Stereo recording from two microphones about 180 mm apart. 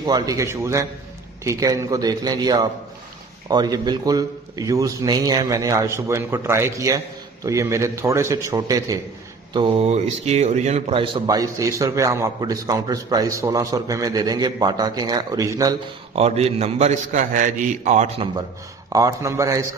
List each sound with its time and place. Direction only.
0.0 s a man's voice: 20° right (ahead or behind)
16.2 s a man's voice: 35° right (ahead or behind)
18.9 s a man's voice: 20° right (ahead or behind)